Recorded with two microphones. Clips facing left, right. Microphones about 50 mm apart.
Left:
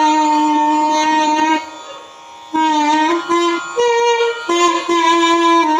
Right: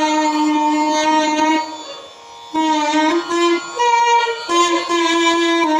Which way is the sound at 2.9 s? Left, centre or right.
Centre.